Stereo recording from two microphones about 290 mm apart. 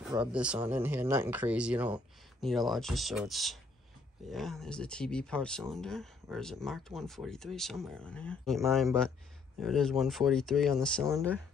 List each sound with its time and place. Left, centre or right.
0.1 s speech: centre
9.6 s speech: centre